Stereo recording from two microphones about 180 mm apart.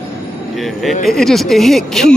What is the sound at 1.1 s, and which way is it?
Speech, centre (ahead or behind).